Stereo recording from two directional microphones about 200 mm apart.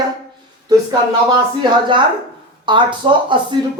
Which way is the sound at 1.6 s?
25° right (ahead or behind).